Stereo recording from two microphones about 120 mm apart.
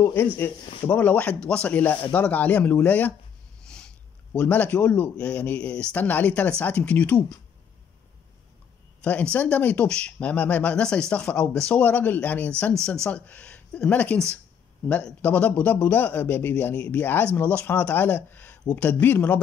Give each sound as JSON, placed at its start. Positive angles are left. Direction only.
{"t": 0.0, "sound": "a man's voice", "side_deg": 20}
{"t": 3.6, "sound": "a sound", "side_deg": 5}
{"t": 4.4, "sound": "a man's voice", "side_deg": 10}
{"t": 9.0, "sound": "a man's voice", "side_deg": 10}